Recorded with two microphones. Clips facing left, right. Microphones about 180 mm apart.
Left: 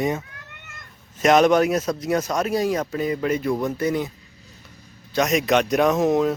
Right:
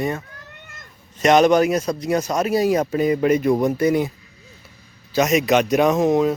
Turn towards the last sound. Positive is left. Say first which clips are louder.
# right 2 dB
turn(degrees=0)  # may be behind; listen again after turning